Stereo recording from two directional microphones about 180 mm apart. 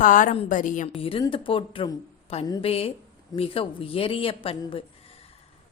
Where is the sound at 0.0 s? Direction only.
45° left (ahead or behind).